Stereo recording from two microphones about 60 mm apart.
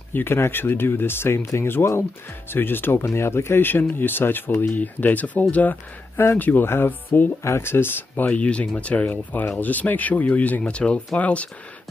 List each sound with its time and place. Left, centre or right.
0.1 s speech: left